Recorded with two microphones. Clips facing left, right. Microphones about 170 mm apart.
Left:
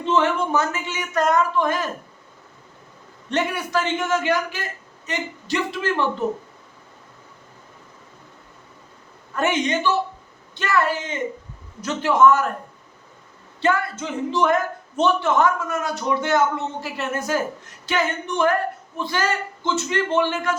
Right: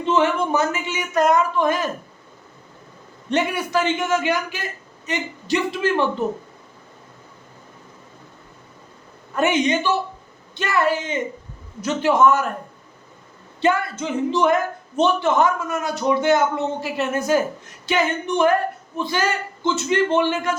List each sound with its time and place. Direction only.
0.0 s a man's voice: 10° right (ahead or behind)
3.2 s a man's voice: 15° right (ahead or behind)
9.3 s a man's voice: 15° right (ahead or behind)
13.6 s a man's voice: 15° right (ahead or behind)